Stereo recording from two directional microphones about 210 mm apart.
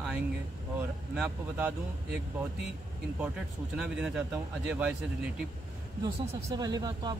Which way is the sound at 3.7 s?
5° right (ahead or behind).